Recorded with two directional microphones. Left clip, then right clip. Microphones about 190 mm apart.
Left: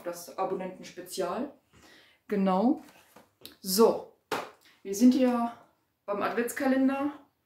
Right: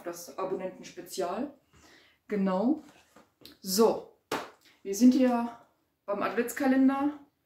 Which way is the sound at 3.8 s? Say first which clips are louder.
Left 2 dB; 5° left (ahead or behind).